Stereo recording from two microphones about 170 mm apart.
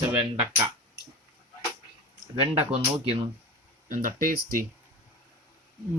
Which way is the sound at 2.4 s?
35° right (ahead or behind).